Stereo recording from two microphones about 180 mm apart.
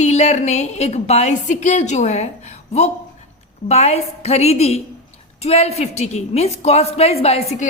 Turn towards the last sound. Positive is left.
turn(degrees=35)  # may be behind; listen again after turning